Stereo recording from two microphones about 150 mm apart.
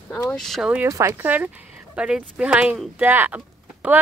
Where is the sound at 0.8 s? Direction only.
20° right (ahead or behind).